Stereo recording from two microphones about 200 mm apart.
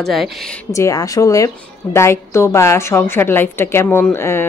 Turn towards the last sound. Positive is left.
turn(degrees=10)  # may be behind; listen again after turning